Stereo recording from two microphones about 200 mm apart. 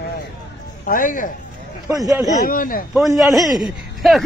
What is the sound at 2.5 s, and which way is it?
Speech, 45° left (ahead or behind).